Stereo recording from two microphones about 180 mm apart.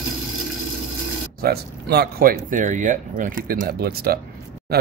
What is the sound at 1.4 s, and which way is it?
Speech, 60° right (ahead or behind).